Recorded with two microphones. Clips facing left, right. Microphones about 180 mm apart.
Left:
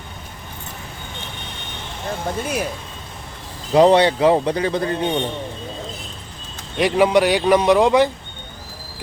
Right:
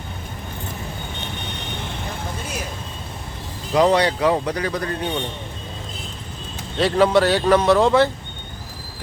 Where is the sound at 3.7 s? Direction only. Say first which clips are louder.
Left 4 dB; 30° left (ahead or behind).